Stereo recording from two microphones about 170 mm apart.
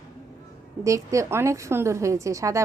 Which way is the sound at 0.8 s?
20° right (ahead or behind).